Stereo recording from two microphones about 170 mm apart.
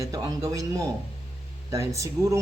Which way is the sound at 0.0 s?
20° right (ahead or behind).